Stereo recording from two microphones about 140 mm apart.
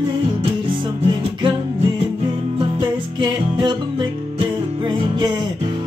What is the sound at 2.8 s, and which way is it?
Music, 35° right (ahead or behind).